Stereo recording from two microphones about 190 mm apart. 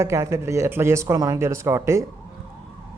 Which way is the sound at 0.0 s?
15° right (ahead or behind).